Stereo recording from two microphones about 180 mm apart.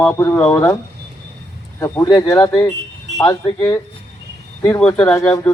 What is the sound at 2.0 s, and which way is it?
Speech, 20° left (ahead or behind).